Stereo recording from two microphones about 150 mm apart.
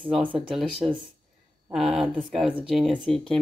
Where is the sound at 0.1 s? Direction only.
35° right (ahead or behind).